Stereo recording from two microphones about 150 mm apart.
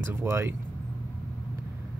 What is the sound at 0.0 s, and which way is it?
Speech, 15° right (ahead or behind).